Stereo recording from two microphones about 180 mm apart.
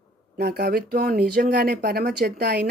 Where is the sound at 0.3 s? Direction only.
65° right (ahead or behind).